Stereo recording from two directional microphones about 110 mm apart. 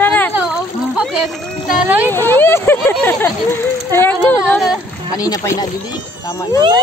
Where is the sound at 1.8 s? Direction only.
15° right (ahead or behind).